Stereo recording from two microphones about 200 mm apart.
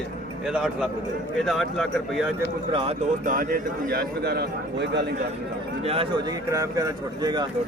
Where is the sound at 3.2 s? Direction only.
45° right (ahead or behind).